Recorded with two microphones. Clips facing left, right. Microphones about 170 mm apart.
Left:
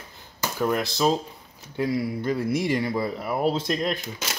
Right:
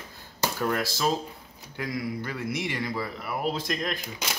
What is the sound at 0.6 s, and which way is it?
Speech, 15° left (ahead or behind).